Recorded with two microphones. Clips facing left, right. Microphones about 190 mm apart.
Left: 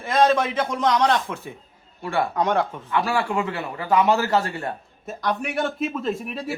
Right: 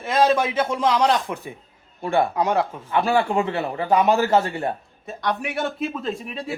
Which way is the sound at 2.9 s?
25° right (ahead or behind).